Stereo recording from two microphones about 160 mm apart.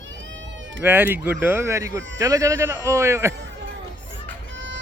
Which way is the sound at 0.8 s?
15° right (ahead or behind).